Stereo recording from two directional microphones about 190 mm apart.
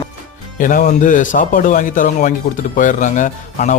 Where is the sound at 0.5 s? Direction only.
45° left (ahead or behind).